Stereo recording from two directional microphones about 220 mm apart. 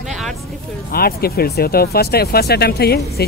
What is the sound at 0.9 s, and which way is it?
Speech, 45° left (ahead or behind).